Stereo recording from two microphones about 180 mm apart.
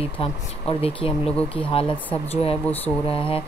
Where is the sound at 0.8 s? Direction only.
30° left (ahead or behind).